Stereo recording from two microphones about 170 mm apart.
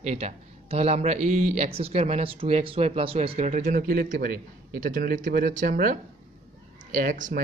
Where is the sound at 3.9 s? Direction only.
60° right (ahead or behind).